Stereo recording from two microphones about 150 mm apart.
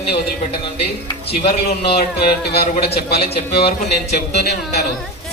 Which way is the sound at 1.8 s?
90° left.